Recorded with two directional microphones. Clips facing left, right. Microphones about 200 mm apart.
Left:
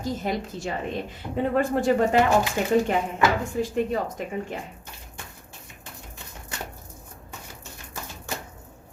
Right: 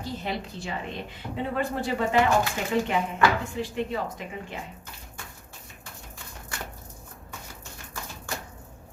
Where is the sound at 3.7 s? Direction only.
45° left (ahead or behind).